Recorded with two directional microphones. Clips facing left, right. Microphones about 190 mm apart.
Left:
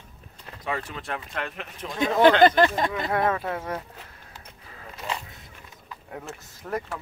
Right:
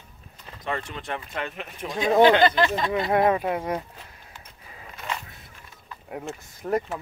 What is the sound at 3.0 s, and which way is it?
Speech, 20° right (ahead or behind).